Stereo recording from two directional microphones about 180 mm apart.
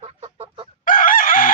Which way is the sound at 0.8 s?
50° left (ahead or behind).